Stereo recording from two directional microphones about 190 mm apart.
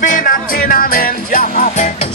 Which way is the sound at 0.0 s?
45° left (ahead or behind).